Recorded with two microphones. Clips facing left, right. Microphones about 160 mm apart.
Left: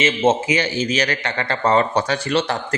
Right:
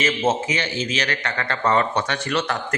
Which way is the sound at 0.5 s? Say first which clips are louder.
Left 5 dB; 40° left (ahead or behind).